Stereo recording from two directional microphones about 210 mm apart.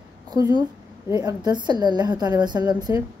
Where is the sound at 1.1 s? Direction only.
20° right (ahead or behind).